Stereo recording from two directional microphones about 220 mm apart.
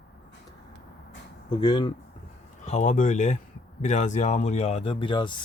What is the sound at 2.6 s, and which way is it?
Speech, 30° left (ahead or behind).